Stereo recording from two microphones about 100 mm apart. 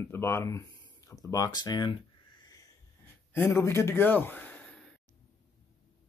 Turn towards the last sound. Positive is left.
turn(degrees=10)  # may be behind; listen again after turning